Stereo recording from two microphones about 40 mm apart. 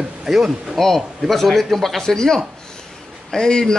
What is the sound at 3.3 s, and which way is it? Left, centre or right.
Speech, centre.